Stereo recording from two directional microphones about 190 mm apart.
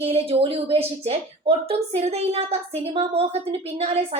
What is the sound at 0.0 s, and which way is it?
A woman's voice, 30° right (ahead or behind).